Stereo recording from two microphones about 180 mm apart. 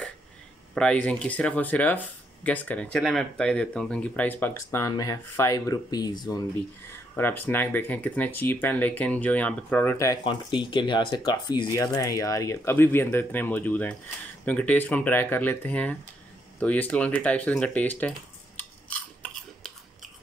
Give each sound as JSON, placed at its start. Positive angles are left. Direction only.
{"t": 0.7, "sound": "speech", "side_deg": 5}
{"t": 6.9, "sound": "speech", "side_deg": 10}
{"t": 10.2, "sound": "speech", "side_deg": 25}
{"t": 18.6, "sound": "a sound", "side_deg": 5}